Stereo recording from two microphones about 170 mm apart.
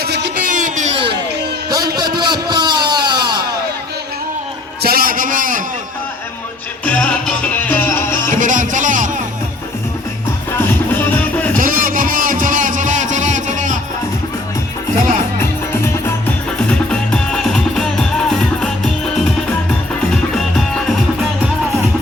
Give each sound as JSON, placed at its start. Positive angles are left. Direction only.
{"t": 0.0, "sound": "music", "side_deg": -70}
{"t": 0.4, "sound": "music", "side_deg": -45}
{"t": 1.7, "sound": "a sound", "side_deg": -25}
{"t": 4.8, "sound": "a sound", "side_deg": -60}
{"t": 6.8, "sound": "music", "side_deg": 10}
{"t": 8.4, "sound": "music", "side_deg": -50}
{"t": 11.5, "sound": "a sound", "side_deg": -55}
{"t": 15.4, "sound": "music", "side_deg": 15}
{"t": 20.3, "sound": "music", "side_deg": 5}